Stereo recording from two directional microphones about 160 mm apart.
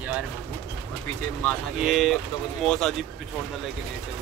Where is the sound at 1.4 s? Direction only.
10° left (ahead or behind).